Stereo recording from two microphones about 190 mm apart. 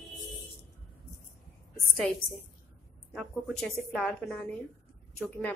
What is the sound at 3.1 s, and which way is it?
A woman's voice, centre (ahead or behind).